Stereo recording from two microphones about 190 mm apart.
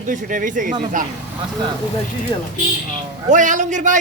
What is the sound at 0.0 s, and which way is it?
Speech, 45° right (ahead or behind).